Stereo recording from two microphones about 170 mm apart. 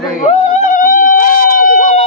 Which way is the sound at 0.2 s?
40° left (ahead or behind).